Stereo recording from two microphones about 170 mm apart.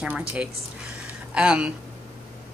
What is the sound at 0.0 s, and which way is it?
A woman's voice, 10° right (ahead or behind).